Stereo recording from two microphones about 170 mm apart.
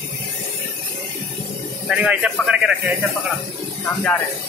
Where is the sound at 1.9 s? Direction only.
5° right (ahead or behind).